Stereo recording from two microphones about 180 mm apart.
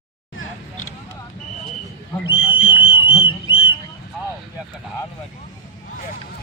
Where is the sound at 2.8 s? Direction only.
30° left (ahead or behind).